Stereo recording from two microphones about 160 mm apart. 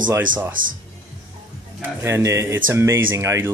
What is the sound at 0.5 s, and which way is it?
Speech, 60° right (ahead or behind).